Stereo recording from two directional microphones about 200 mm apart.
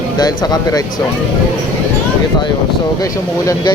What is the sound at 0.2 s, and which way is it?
Speech, 20° left (ahead or behind).